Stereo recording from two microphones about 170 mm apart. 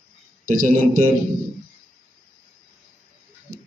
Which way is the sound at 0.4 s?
55° right (ahead or behind).